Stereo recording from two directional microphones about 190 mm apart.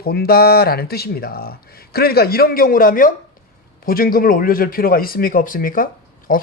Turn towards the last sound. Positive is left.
turn(degrees=50)  # may be behind; listen again after turning